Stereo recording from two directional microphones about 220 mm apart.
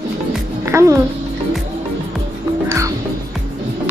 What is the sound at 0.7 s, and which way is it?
Music, 15° right (ahead or behind).